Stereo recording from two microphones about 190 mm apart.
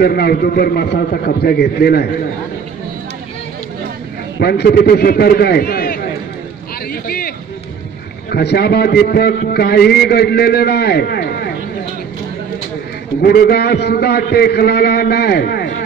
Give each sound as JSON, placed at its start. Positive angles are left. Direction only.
{"t": 0.0, "sound": "a man's voice", "side_deg": 55}
{"t": 4.4, "sound": "a man's voice", "side_deg": 55}
{"t": 6.9, "sound": "a sound", "side_deg": 50}
{"t": 8.3, "sound": "a man's voice", "side_deg": 55}
{"t": 13.2, "sound": "a man's voice", "side_deg": 55}